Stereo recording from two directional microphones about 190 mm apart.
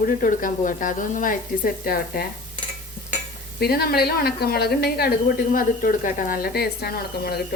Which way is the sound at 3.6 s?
55° left (ahead or behind).